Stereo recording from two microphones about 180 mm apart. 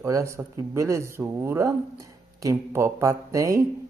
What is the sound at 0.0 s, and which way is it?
Speech, 15° right (ahead or behind).